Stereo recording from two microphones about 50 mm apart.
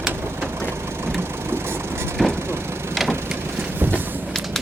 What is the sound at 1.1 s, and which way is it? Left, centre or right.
Vehicle, right.